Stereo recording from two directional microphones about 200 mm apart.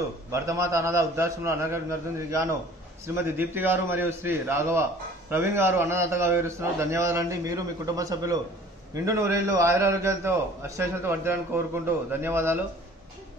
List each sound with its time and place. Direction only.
0.3 s a man's voice: 15° right (ahead or behind)